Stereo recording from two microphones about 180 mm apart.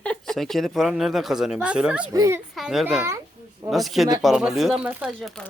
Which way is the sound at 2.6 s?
5° right (ahead or behind).